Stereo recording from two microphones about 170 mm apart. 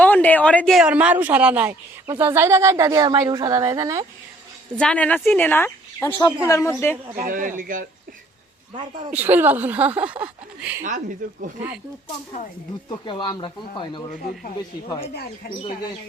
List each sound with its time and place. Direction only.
0.0 s a woman's voice: 10° left (ahead or behind); by 4.0 s 20° right (ahead or behind)
4.8 s a woman's voice: 5° left (ahead or behind)
7.3 s speech: 50° right (ahead or behind)
9.1 s speech: 10° right (ahead or behind)
10.8 s speech: 50° right (ahead or behind)
12.9 s speech: 25° left (ahead or behind)